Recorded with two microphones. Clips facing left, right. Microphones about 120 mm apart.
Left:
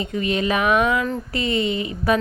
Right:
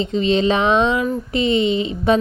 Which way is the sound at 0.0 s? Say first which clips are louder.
Right 6 dB; 25° right (ahead or behind).